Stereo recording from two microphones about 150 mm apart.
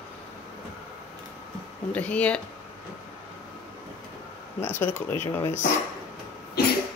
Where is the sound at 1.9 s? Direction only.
10° left (ahead or behind).